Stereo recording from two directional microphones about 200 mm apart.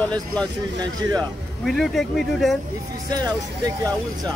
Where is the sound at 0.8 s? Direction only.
20° right (ahead or behind).